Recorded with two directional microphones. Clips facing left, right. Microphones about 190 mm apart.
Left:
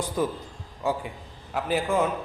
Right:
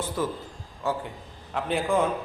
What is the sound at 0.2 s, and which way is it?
Speech, 15° left (ahead or behind).